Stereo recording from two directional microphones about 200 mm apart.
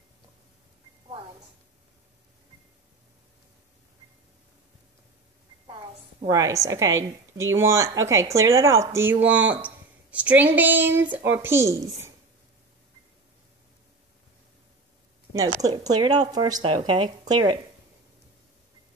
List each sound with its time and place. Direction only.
5.7 s a woman's voice: 20° right (ahead or behind)
15.3 s speech: 15° right (ahead or behind)